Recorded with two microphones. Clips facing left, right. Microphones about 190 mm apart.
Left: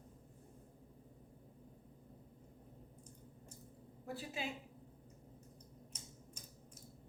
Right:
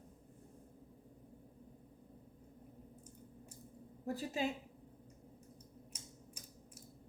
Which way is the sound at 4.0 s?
40° right (ahead or behind).